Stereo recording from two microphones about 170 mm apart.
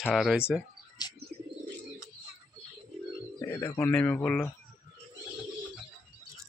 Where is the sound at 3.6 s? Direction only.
15° left (ahead or behind).